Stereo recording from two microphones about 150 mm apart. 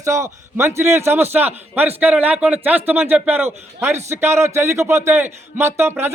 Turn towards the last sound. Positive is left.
turn(degrees=-15)  # may be behind; listen again after turning